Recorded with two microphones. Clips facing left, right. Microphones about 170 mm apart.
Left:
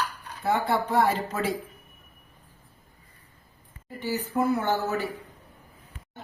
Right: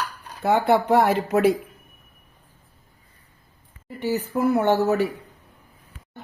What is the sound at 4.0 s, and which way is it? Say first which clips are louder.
Speech: right 3 dB; 70° right (ahead or behind).